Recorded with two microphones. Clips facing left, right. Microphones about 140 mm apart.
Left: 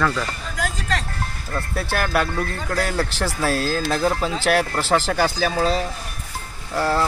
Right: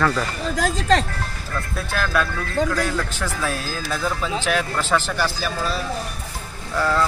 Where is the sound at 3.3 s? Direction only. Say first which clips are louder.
Left 4 dB; 35° left (ahead or behind).